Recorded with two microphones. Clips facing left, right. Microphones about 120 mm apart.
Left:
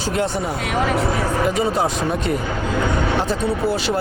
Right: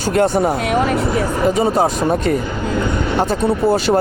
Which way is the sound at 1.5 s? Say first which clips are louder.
Right 6 dB; 40° right (ahead or behind).